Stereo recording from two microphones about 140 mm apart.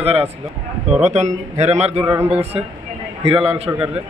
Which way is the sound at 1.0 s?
55° right (ahead or behind).